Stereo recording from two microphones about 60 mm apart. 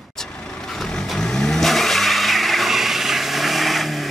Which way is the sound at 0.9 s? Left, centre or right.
Centre.